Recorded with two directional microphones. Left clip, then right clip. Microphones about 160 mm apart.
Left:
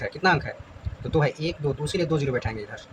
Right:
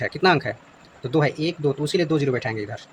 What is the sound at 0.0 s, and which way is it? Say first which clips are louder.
Speech: right 3 dB; 50° right (ahead or behind).